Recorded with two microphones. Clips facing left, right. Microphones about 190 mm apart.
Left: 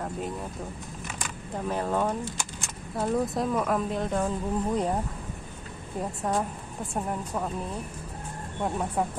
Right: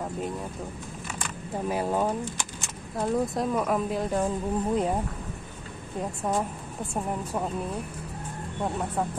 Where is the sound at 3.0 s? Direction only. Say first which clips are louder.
Even; centre (ahead or behind).